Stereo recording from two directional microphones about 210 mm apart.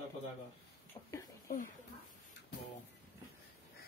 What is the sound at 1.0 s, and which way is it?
Speech, 15° left (ahead or behind).